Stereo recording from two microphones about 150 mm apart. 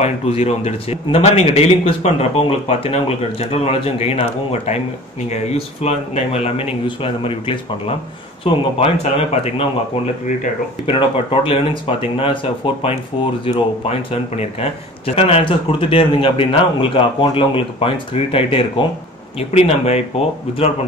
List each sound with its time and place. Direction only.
0.0 s a man's voice: 45° left (ahead or behind)
10.9 s a man's voice: 35° left (ahead or behind)